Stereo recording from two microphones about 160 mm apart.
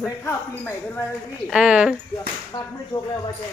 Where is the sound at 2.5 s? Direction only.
25° left (ahead or behind).